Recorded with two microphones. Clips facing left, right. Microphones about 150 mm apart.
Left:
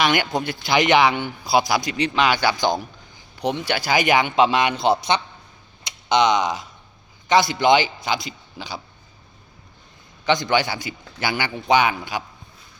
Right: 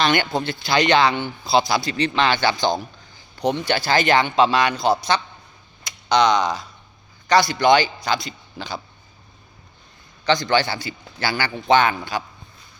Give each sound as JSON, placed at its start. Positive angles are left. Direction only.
{"t": 0.0, "sound": "a man's voice", "side_deg": 10}
{"t": 10.2, "sound": "a man's voice", "side_deg": 15}